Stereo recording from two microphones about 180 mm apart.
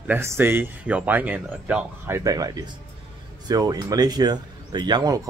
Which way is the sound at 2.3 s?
20° right (ahead or behind).